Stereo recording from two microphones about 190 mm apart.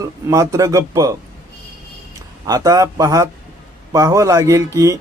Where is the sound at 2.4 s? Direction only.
20° right (ahead or behind).